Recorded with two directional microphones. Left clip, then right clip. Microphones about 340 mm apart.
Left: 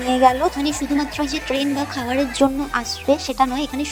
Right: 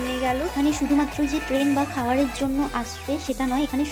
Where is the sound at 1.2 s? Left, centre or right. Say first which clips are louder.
Left 2 dB; left.